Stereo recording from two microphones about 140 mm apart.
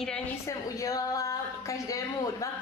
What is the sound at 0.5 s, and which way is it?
A woman's voice, 25° left (ahead or behind).